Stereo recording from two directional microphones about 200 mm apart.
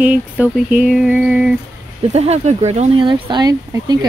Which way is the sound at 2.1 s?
30° right (ahead or behind).